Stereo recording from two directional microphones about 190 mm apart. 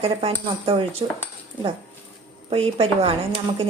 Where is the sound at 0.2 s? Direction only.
30° right (ahead or behind).